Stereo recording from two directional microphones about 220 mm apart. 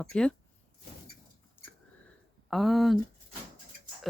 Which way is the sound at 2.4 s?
Centre (ahead or behind).